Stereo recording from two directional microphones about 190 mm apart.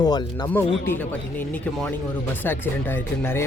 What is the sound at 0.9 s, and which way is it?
Speech, 10° left (ahead or behind).